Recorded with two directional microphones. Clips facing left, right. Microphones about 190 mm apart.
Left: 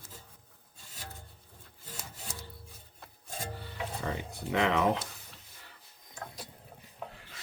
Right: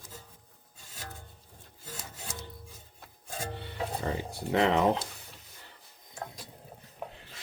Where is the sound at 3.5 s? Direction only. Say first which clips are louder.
Right 5 dB; 30° right (ahead or behind).